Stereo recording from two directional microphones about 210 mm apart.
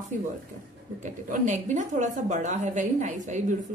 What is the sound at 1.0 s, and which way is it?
A woman's voice, 35° right (ahead or behind).